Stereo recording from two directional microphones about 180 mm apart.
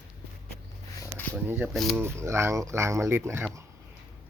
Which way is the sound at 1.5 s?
10° right (ahead or behind).